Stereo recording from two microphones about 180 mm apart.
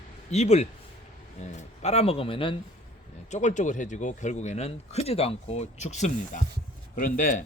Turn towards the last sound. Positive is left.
turn(degrees=50)  # may be behind; listen again after turning